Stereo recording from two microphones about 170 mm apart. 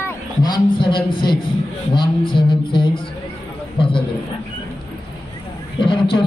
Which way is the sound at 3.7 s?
30° left (ahead or behind).